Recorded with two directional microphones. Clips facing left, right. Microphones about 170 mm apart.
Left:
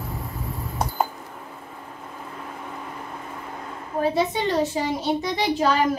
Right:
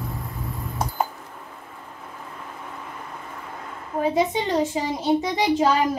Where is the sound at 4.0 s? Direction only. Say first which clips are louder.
Right 1 dB; 20° right (ahead or behind).